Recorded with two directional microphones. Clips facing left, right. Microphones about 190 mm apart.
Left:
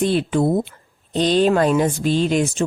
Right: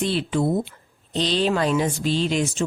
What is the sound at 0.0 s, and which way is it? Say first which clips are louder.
Speech: left 4 dB; 50° left (ahead or behind).